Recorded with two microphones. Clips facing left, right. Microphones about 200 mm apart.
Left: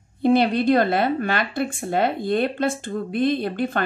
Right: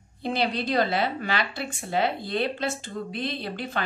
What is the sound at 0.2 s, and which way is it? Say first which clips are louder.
A woman's voice: left 9 dB; 55° left (ahead or behind).